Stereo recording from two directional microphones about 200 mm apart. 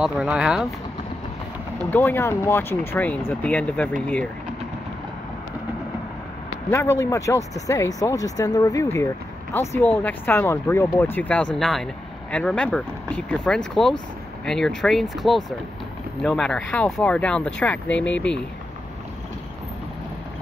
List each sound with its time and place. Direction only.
0.0 s speech: 5° right (ahead or behind)
1.9 s speech: 10° left (ahead or behind)
6.7 s speech: 15° left (ahead or behind)